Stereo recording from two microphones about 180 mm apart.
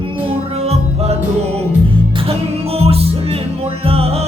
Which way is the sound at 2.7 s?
35° right (ahead or behind).